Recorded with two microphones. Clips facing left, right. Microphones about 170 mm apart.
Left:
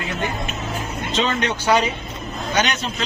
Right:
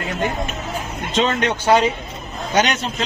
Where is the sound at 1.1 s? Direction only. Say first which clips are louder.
Right 3 dB; 45° right (ahead or behind).